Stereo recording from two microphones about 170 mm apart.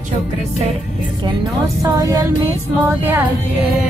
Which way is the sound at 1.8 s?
20° right (ahead or behind).